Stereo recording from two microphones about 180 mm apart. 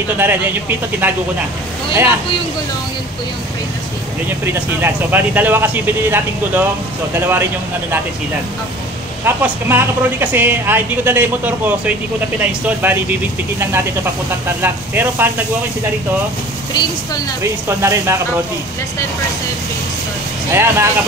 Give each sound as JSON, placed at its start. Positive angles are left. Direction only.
{"t": 0.2, "sound": "speech", "side_deg": -10}
{"t": 4.5, "sound": "speech", "side_deg": -10}
{"t": 9.2, "sound": "speech", "side_deg": -10}
{"t": 17.4, "sound": "speech", "side_deg": -15}
{"t": 20.5, "sound": "speech", "side_deg": -15}